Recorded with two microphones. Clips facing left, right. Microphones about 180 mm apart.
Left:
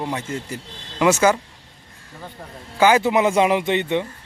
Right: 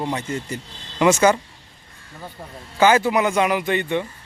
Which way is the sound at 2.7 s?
15° left (ahead or behind).